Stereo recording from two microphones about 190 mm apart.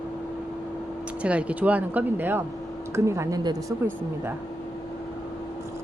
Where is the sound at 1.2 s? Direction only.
5° right (ahead or behind).